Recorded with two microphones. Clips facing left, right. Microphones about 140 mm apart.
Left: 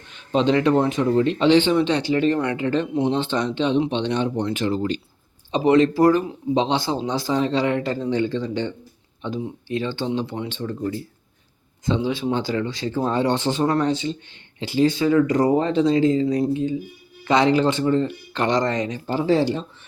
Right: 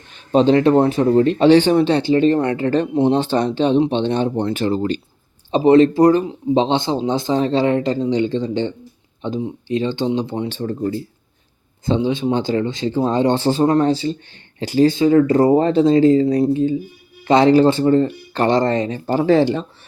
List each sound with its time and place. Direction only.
0.3 s speech: 35° right (ahead or behind)
10.5 s speech: 35° right (ahead or behind)
14.9 s speech: 30° right (ahead or behind)
19.1 s speech: 60° right (ahead or behind)